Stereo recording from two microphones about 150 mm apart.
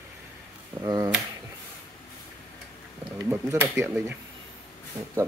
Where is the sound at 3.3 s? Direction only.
10° right (ahead or behind).